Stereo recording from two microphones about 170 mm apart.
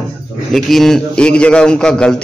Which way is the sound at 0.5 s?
Centre (ahead or behind).